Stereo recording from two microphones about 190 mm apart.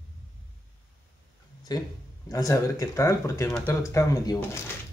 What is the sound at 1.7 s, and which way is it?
Speech, 20° left (ahead or behind).